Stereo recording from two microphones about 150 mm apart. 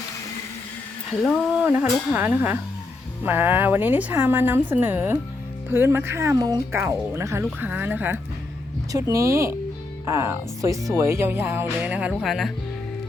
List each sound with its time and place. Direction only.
1.2 s speech: 5° right (ahead or behind)
8.9 s speech: 20° right (ahead or behind); by 12.5 s centre (ahead or behind)